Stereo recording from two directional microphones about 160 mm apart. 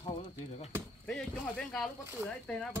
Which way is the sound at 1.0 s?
5° left (ahead or behind).